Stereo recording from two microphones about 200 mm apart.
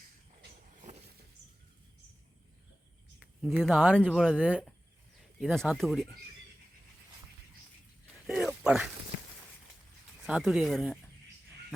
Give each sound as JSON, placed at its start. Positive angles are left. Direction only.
{"t": 3.2, "sound": "speech", "side_deg": 0}
{"t": 8.0, "sound": "a sound", "side_deg": -5}
{"t": 10.2, "sound": "speech", "side_deg": -5}